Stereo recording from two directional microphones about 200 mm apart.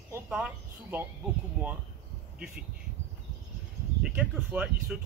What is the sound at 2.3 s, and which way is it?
Speech, 45° right (ahead or behind).